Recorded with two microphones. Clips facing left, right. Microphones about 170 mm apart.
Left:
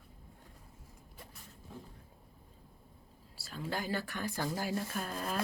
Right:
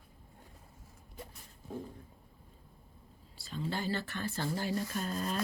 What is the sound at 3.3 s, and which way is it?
Speech, 5° left (ahead or behind).